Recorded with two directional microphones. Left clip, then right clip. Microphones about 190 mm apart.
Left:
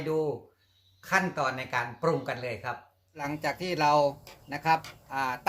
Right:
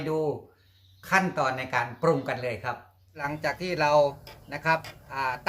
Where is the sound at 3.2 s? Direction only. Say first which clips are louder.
Right 2 dB; 30° left (ahead or behind).